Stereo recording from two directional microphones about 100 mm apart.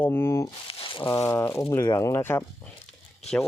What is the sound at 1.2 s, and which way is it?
Speech, 30° left (ahead or behind).